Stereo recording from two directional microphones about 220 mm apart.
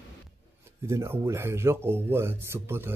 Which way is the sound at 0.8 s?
10° right (ahead or behind).